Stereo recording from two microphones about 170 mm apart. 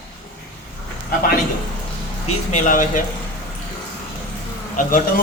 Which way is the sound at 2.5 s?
50° left (ahead or behind).